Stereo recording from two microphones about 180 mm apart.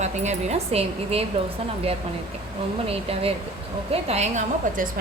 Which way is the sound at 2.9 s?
35° right (ahead or behind).